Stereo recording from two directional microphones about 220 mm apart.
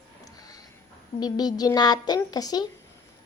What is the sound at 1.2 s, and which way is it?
A woman's voice, 20° left (ahead or behind).